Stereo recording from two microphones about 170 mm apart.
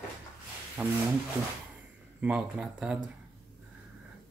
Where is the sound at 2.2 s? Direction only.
5° right (ahead or behind).